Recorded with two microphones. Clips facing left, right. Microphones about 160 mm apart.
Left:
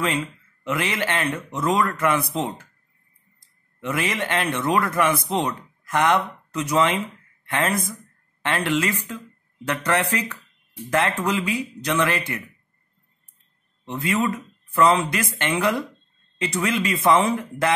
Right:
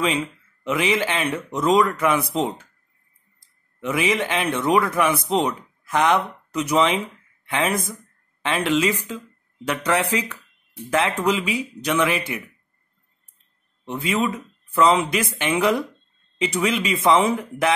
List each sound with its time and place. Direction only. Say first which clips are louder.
0.7 s speech: right 3 dB; 10° right (ahead or behind)
3.8 s speech: right 3 dB; 15° right (ahead or behind)
13.8 s speech: even; 15° right (ahead or behind)